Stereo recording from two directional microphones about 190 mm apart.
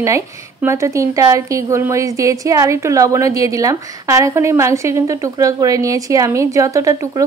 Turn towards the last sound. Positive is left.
turn(degrees=-15)  # may be behind; listen again after turning